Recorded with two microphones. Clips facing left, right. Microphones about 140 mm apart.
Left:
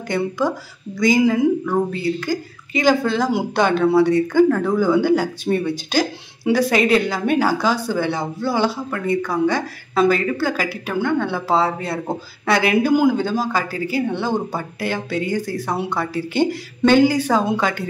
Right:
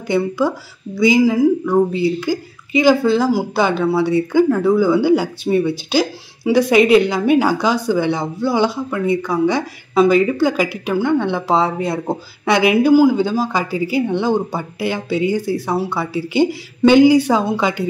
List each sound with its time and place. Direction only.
0.4 s speech: 10° right (ahead or behind)